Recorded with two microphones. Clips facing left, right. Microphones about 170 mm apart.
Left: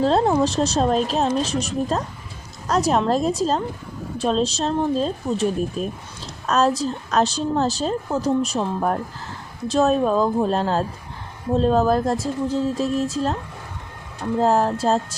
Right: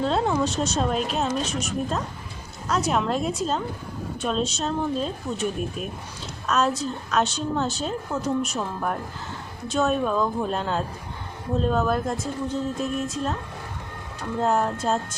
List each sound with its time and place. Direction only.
0.0 s speech: 35° left (ahead or behind)
14.4 s speech: 35° left (ahead or behind)